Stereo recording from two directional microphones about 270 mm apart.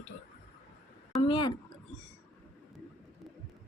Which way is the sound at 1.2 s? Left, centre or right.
Centre.